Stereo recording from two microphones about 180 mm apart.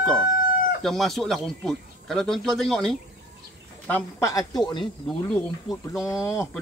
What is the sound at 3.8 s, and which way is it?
Speech, 10° left (ahead or behind).